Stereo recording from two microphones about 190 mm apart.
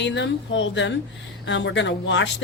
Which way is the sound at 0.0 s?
70° left (ahead or behind).